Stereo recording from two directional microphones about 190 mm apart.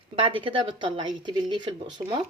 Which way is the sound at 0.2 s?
25° right (ahead or behind).